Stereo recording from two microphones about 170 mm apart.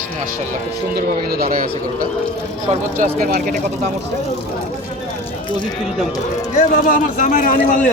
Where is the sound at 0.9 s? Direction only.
65° right (ahead or behind).